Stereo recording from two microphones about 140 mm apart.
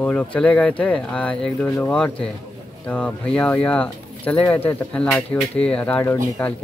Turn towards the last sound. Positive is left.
turn(degrees=10)  # may be behind; listen again after turning